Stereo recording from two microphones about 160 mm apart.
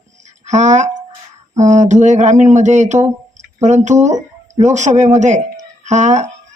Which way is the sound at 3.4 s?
45° right (ahead or behind).